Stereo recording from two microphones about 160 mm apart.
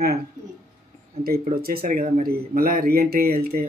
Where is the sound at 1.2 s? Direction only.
70° right (ahead or behind).